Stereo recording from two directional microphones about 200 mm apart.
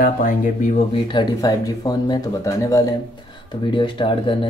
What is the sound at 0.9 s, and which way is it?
Speech, 25° left (ahead or behind).